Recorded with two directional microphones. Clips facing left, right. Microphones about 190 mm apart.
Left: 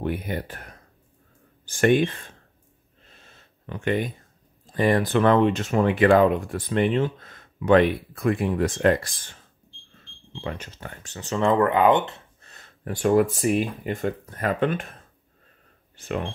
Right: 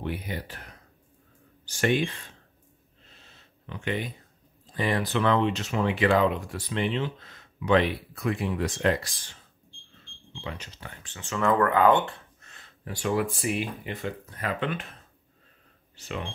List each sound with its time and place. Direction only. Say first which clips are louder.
0.0 s speech: left 5 dB; 50° left (ahead or behind)
3.1 s a sound: left 3 dB; 50° left (ahead or behind)
4.7 s speech: left 6 dB; 50° left (ahead or behind)
10.4 s speech: left 5 dB; 50° left (ahead or behind); by 12.2 s 20° left (ahead or behind)
12.4 s a sound: left 2 dB; 35° left (ahead or behind)
12.8 s speech: left 8 dB; 50° left (ahead or behind)
16.0 s speech: left 6 dB; 50° left (ahead or behind)